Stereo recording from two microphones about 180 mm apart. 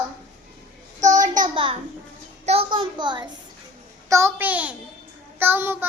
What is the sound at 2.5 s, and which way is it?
Speech, 30° right (ahead or behind).